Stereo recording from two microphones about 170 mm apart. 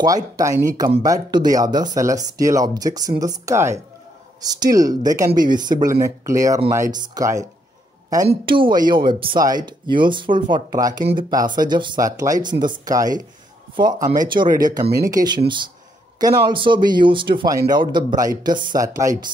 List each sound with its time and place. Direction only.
0.0 s speech: 20° right (ahead or behind)
8.5 s speech: 30° right (ahead or behind)
13.9 s speech: 50° right (ahead or behind)
14.2 s speech: 25° right (ahead or behind)